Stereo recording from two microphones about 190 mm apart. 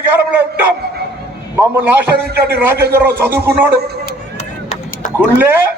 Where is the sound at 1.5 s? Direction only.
10° right (ahead or behind).